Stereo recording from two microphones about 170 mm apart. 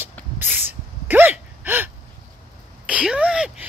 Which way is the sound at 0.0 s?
10° right (ahead or behind).